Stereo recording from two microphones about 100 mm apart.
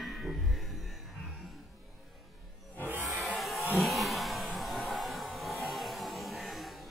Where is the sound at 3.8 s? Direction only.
Centre (ahead or behind).